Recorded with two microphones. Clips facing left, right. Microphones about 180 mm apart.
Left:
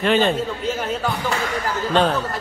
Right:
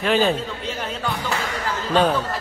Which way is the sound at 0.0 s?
Centre (ahead or behind).